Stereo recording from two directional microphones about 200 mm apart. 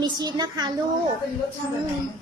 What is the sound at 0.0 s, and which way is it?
Speech, 20° right (ahead or behind).